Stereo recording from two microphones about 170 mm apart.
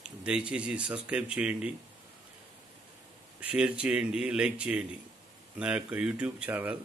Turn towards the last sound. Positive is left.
turn(degrees=-10)  # may be behind; listen again after turning